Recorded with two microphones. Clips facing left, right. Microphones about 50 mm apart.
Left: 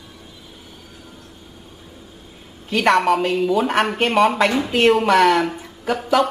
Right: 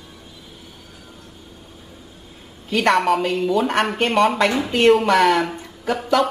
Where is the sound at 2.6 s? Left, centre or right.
Centre.